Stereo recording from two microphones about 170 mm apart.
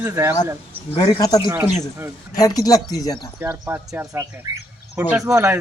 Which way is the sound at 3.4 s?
15° right (ahead or behind).